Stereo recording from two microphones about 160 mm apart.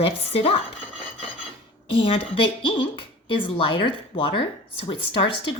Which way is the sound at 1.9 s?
35° left (ahead or behind).